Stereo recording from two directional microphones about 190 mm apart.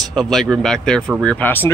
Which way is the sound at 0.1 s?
Centre (ahead or behind).